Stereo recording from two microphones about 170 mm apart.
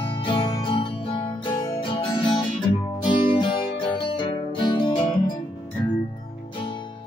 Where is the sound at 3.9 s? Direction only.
30° left (ahead or behind).